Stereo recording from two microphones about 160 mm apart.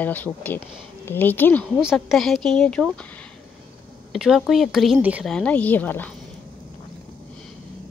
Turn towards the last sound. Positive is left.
turn(degrees=10)  # may be behind; listen again after turning